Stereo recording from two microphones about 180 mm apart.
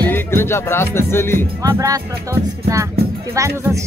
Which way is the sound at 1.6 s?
20° right (ahead or behind).